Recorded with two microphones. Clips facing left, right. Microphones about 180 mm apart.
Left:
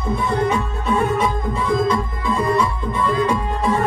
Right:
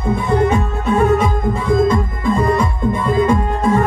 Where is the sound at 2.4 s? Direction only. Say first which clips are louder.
Even; 50° right (ahead or behind).